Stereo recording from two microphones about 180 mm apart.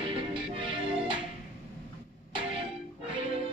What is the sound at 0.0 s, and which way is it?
Music, 30° right (ahead or behind).